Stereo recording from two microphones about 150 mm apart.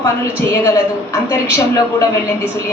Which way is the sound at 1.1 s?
20° left (ahead or behind).